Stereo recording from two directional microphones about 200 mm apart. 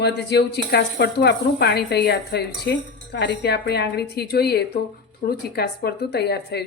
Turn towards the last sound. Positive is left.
turn(degrees=55)  # may be behind; listen again after turning